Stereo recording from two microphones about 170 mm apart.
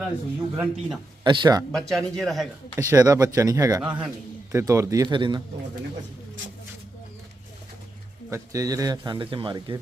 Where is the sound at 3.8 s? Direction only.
5° right (ahead or behind); by 5.4 s 25° right (ahead or behind).